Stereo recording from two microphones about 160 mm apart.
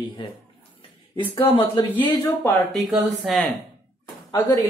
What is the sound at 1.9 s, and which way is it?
Speech, 15° left (ahead or behind).